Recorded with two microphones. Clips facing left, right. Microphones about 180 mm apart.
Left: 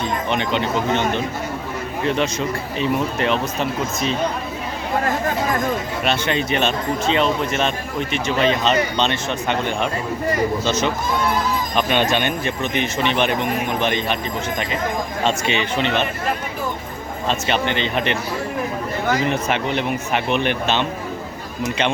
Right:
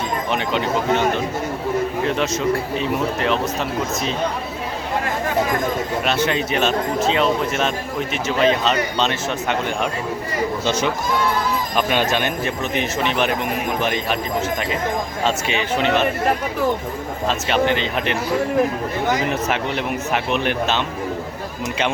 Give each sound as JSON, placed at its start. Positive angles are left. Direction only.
{"t": 0.3, "sound": "speech", "side_deg": -5}
{"t": 6.1, "sound": "speech", "side_deg": -5}
{"t": 15.2, "sound": "speech", "side_deg": -5}
{"t": 17.2, "sound": "speech", "side_deg": 0}
{"t": 19.3, "sound": "speech", "side_deg": 0}